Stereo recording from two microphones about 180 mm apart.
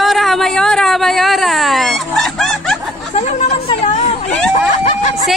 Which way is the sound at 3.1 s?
40° left (ahead or behind).